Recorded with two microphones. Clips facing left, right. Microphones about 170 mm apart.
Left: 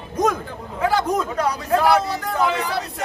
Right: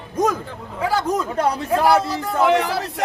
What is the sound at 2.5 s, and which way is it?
Speech, 75° right (ahead or behind).